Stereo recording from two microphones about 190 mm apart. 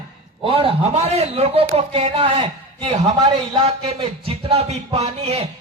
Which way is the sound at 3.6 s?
30° right (ahead or behind).